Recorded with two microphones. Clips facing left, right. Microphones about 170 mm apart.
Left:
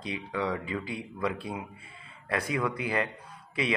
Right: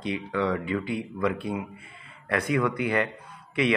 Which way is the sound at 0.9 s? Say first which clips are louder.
Right 5 dB; 30° left (ahead or behind).